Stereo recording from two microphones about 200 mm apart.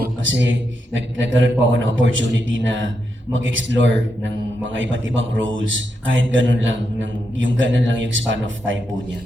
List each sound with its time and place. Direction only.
0.3 s a man's voice: 65° right (ahead or behind)